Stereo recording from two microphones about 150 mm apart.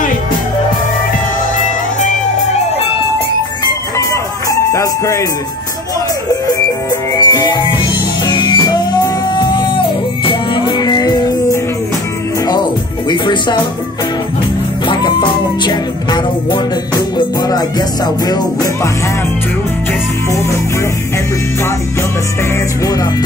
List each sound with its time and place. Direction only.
4.1 s music: 20° left (ahead or behind)
7.2 s music: 25° left (ahead or behind)
13.1 s speech: 30° left (ahead or behind)
14.9 s music: 30° left (ahead or behind)